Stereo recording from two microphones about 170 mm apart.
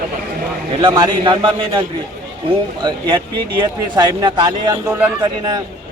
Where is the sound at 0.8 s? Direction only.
30° right (ahead or behind).